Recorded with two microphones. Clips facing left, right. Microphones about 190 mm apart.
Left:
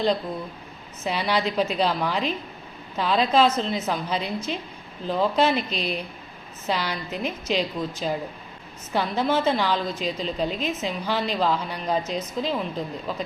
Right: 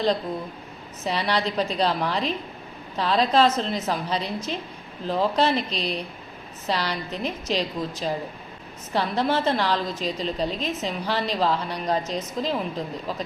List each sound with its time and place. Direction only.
1.0 s a woman's voice: centre (ahead or behind)